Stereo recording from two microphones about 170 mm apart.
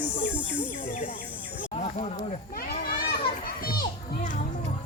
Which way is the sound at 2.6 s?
60° left (ahead or behind).